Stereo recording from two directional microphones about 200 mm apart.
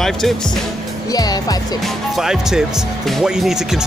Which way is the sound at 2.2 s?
Centre (ahead or behind).